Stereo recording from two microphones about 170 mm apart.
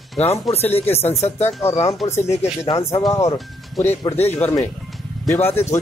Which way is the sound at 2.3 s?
40° left (ahead or behind).